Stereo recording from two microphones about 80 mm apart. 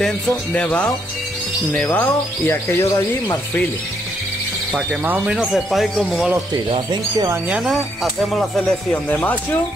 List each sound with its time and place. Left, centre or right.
0.5 s speech: centre
2.0 s speech: left
5.0 s speech: right
5.3 s speech: centre
6.5 s speech: right
7.4 s speech: centre
8.0 s speech: centre
8.9 s speech: left